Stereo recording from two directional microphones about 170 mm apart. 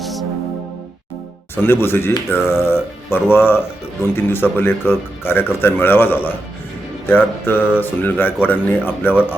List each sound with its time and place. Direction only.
0.0 s music: centre (ahead or behind)
1.6 s speech: 15° left (ahead or behind)